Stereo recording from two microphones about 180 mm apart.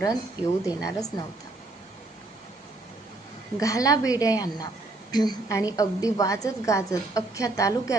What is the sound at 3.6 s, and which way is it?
A woman's voice, 20° left (ahead or behind).